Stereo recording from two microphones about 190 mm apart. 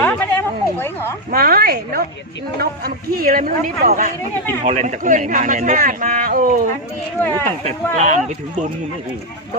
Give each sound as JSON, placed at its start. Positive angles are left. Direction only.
{"t": 0.0, "sound": "a sound", "side_deg": 10}
{"t": 1.3, "sound": "a woman's voice", "side_deg": -50}
{"t": 7.2, "sound": "speech", "side_deg": 10}
{"t": 7.4, "sound": "speech", "side_deg": -35}